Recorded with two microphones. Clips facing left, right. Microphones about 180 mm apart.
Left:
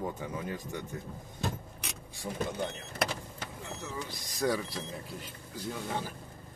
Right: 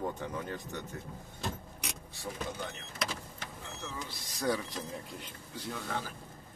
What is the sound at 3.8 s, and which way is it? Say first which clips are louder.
Speech: left 2 dB; 15° left (ahead or behind).